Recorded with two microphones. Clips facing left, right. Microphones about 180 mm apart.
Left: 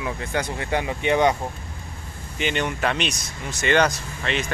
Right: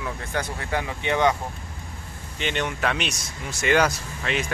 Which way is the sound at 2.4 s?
Centre (ahead or behind).